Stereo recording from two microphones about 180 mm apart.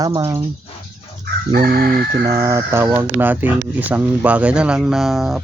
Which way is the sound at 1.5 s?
55° right (ahead or behind).